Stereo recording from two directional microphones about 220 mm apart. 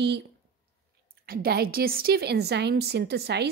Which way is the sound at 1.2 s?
45° right (ahead or behind).